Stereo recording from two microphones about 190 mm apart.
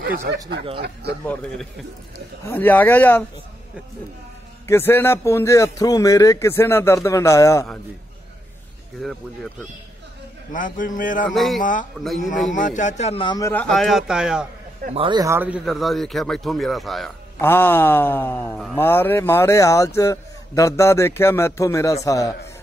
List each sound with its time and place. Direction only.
0.7 s speech: 60° right (ahead or behind)
1.2 s a man's voice: 10° left (ahead or behind)
4.6 s a man's voice: 10° left (ahead or behind)
10.5 s a man's voice: 45° left (ahead or behind)
11.2 s speech: centre (ahead or behind)
12.2 s a man's voice: 40° left (ahead or behind); by 13.5 s 25° left (ahead or behind)
13.5 s speech: 5° left (ahead or behind)
14.9 s speech: 25° right (ahead or behind); by 17.1 s centre (ahead or behind)
17.4 s a man's voice: 10° left (ahead or behind)